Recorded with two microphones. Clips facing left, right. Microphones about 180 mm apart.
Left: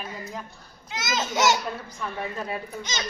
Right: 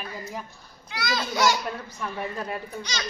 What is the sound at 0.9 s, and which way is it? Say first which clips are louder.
Speech: even; 20° left (ahead or behind).